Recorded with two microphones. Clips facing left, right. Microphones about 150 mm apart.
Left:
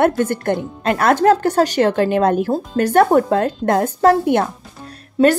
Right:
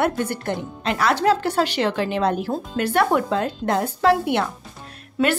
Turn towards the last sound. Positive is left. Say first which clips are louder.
# left 7 dB
turn(degrees=30)  # may be behind; listen again after turning